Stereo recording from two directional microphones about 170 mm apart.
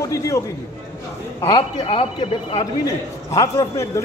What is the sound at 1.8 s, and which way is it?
Speech, 35° left (ahead or behind).